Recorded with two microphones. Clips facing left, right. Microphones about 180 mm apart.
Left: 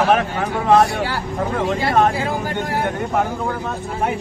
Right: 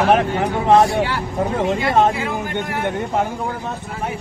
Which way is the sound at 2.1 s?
35° left (ahead or behind).